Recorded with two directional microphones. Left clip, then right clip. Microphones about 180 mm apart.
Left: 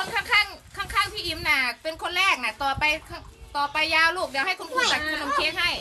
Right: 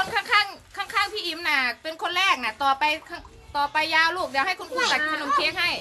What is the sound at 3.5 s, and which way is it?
Speech, 25° right (ahead or behind).